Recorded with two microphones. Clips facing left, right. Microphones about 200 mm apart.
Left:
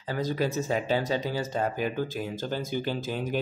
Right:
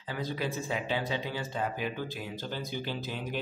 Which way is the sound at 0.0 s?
45° left (ahead or behind).